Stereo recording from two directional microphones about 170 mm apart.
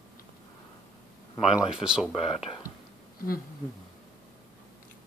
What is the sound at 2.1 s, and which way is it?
Speech, 35° left (ahead or behind).